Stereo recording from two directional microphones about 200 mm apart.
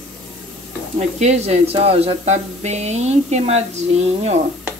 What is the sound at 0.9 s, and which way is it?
Speech, 35° right (ahead or behind).